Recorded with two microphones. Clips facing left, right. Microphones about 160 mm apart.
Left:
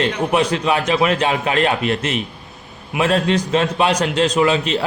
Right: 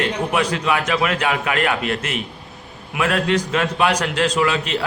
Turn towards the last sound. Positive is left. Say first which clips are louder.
# left 3 dB
turn(degrees=25)  # may be behind; listen again after turning